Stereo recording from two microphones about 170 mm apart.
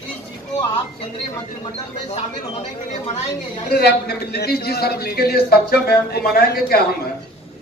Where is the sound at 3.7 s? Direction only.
70° left (ahead or behind).